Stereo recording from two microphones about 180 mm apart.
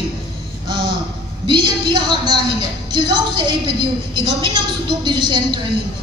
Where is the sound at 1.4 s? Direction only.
25° right (ahead or behind).